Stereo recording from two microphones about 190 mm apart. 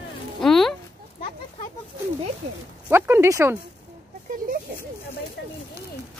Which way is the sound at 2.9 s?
15° right (ahead or behind).